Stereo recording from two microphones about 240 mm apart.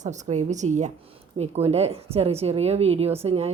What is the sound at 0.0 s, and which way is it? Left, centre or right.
A woman's voice, right.